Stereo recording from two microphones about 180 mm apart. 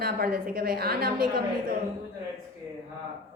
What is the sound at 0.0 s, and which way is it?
A woman's voice, 55° right (ahead or behind).